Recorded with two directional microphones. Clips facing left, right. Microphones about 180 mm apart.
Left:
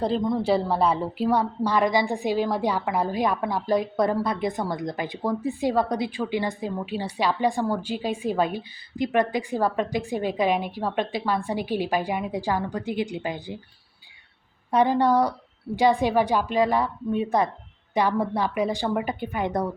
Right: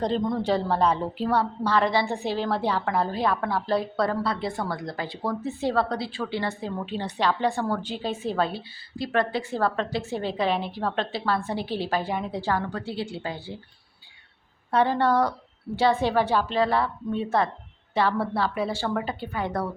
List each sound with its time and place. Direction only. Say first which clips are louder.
0.0 s a woman's voice: left 1 dB; centre (ahead or behind)
14.7 s a woman's voice: left 2 dB; 15° left (ahead or behind)